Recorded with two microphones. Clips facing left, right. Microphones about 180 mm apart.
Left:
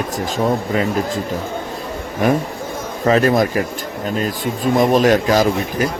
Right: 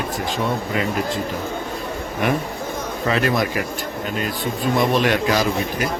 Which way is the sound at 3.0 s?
40° left (ahead or behind).